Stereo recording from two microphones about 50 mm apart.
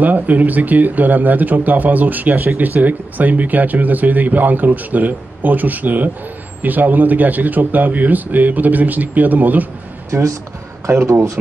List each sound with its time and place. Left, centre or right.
0.0 s speech: right
10.1 s speech: right
10.9 s speech: right